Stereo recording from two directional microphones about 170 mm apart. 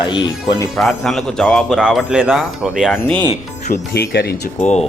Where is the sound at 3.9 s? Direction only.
75° left (ahead or behind).